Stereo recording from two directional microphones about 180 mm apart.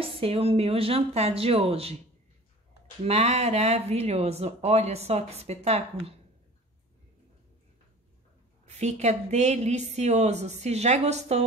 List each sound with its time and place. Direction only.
0.0 s speech: 30° right (ahead or behind)
3.1 s speech: 35° right (ahead or behind)
8.6 s speech: 40° right (ahead or behind)